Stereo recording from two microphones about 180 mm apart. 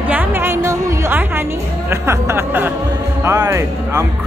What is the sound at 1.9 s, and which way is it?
Speech, 15° right (ahead or behind).